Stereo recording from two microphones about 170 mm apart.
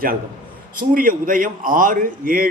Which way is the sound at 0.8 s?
55° right (ahead or behind).